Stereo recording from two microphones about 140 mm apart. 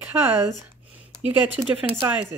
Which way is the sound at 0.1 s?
20° right (ahead or behind).